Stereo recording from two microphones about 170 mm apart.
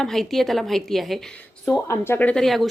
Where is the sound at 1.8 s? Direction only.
15° left (ahead or behind).